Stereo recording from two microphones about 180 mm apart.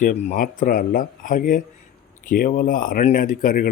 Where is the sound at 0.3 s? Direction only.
50° left (ahead or behind).